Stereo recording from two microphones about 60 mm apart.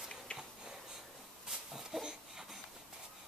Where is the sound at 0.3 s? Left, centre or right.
Centre.